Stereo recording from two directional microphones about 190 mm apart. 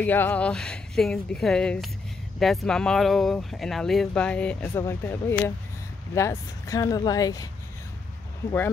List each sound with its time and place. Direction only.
0.0 s speech: 10° left (ahead or behind)